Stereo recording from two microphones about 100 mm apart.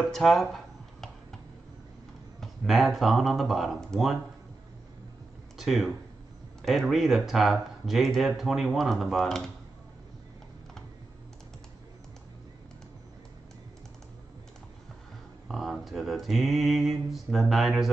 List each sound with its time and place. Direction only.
0.1 s speech: 5° left (ahead or behind)
2.4 s speech: centre (ahead or behind)
5.6 s speech: centre (ahead or behind)
15.4 s speech: centre (ahead or behind)